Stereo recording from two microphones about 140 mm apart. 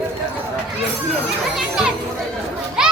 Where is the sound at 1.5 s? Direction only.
5° right (ahead or behind).